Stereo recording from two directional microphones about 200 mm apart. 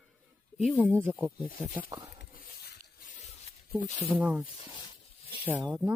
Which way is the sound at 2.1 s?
50° left (ahead or behind).